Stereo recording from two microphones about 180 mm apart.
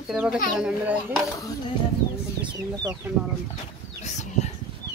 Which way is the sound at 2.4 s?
20° right (ahead or behind).